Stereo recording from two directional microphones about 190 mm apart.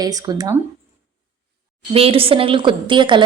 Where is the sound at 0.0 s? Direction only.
20° right (ahead or behind).